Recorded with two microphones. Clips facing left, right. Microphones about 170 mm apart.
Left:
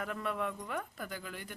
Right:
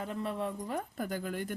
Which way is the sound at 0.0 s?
30° right (ahead or behind).